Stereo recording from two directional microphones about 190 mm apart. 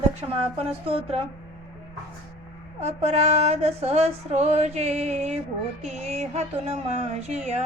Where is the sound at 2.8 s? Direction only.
35° right (ahead or behind).